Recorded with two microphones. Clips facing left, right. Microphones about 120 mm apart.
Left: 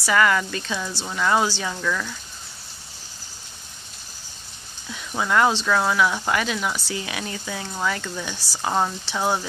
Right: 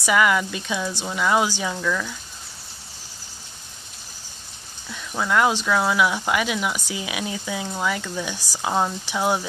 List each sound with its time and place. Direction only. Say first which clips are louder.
0.0 s speech: even; 10° right (ahead or behind)
4.8 s speech: even; 5° left (ahead or behind)
5.5 s speech: even; 10° right (ahead or behind)
8.4 s speech: even; 15° right (ahead or behind)